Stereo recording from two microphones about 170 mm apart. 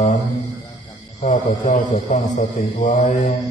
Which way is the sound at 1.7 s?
45° left (ahead or behind).